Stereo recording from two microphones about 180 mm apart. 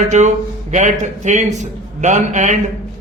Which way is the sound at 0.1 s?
40° right (ahead or behind).